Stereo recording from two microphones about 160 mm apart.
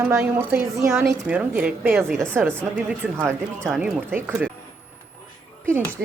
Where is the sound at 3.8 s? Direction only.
10° right (ahead or behind).